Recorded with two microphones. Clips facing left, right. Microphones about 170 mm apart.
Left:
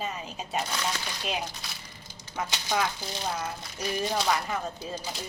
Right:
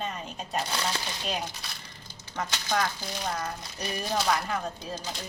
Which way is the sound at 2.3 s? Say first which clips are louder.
Even; 10° left (ahead or behind).